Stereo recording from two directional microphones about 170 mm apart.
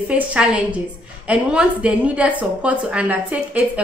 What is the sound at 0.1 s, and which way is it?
A woman's voice, 5° right (ahead or behind).